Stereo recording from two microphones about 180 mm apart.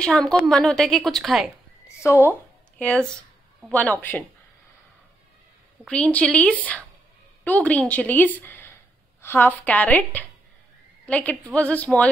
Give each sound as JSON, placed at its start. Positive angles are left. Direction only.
{"t": 0.0, "sound": "a woman's voice", "side_deg": 5}
{"t": 2.0, "sound": "a woman's voice", "side_deg": 15}
{"t": 5.9, "sound": "a woman's voice", "side_deg": 5}